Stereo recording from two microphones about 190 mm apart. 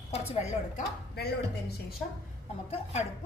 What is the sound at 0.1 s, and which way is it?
Speech, 35° left (ahead or behind).